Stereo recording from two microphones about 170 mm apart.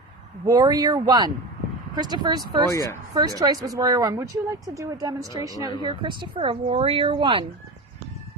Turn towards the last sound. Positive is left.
turn(degrees=-30)  # may be behind; listen again after turning